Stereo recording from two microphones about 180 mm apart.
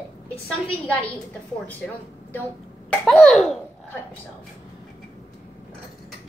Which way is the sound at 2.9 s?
5° left (ahead or behind).